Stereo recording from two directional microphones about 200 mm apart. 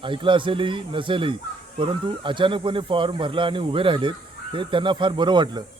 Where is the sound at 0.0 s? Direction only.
25° right (ahead or behind).